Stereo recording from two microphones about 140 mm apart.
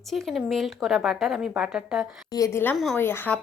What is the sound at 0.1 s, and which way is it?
A woman's voice, centre (ahead or behind).